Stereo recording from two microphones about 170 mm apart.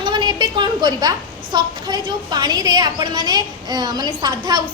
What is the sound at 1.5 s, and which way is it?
A woman's voice, 25° right (ahead or behind).